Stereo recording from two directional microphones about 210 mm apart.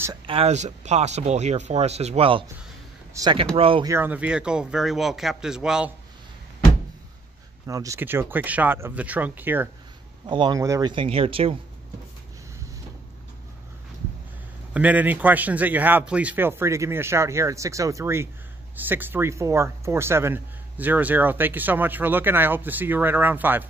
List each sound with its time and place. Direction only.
0.0 s speech: 20° right (ahead or behind)
3.9 s a man's voice: 10° right (ahead or behind)
7.6 s speech: 15° right (ahead or behind)
10.2 s speech: 20° right (ahead or behind)
14.7 s speech: 5° right (ahead or behind)